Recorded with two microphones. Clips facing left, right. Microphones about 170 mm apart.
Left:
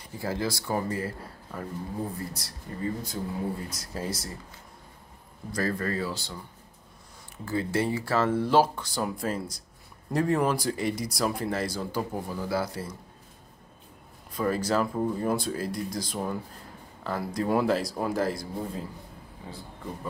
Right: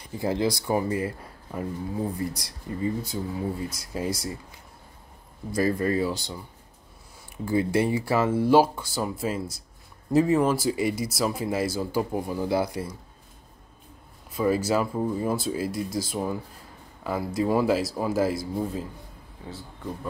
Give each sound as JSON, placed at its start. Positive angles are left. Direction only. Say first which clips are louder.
{"t": 0.2, "sound": "speech", "louder": "right 5 dB", "side_deg": -20}
{"t": 5.5, "sound": "speech", "louder": "right 5 dB", "side_deg": -15}
{"t": 7.4, "sound": "speech", "louder": "right 4 dB", "side_deg": -15}
{"t": 14.3, "sound": "speech", "louder": "right 3 dB", "side_deg": -5}